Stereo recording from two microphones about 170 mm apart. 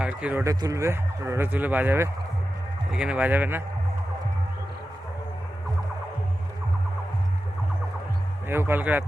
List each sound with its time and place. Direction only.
0.0 s speech: 5° right (ahead or behind)
0.4 s speech: 20° right (ahead or behind)
8.4 s speech: 15° right (ahead or behind)